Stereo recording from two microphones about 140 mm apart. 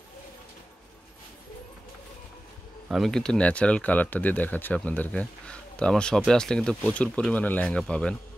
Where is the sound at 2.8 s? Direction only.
Centre (ahead or behind).